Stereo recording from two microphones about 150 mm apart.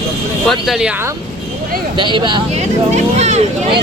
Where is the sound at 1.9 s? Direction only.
30° right (ahead or behind).